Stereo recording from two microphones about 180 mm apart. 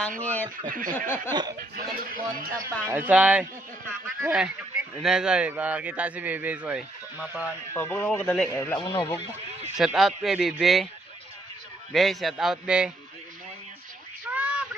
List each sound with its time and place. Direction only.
0.2 s speech: 10° left (ahead or behind)
0.7 s speech: 50° right (ahead or behind)
0.9 s speech: 10° left (ahead or behind)
1.3 s speech: 20° right (ahead or behind)
1.5 s speech: 55° right (ahead or behind)
2.6 s speech: 15° right (ahead or behind)
7.7 s speech: 15° left (ahead or behind)
8.8 s speech: 30° left (ahead or behind)
9.7 s speech: 5° right (ahead or behind)
11.9 s speech: centre (ahead or behind)
14.3 s a sound: 10° right (ahead or behind)